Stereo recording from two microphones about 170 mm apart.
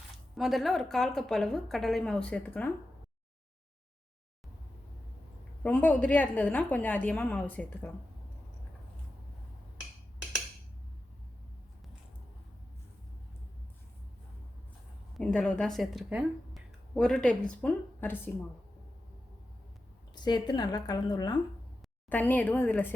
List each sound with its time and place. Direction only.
0.3 s a woman's voice: centre (ahead or behind)
5.6 s a woman's voice: 10° left (ahead or behind)
15.2 s a woman's voice: 5° left (ahead or behind)
20.1 s a woman's voice: 25° left (ahead or behind)
22.1 s a woman's voice: 10° left (ahead or behind)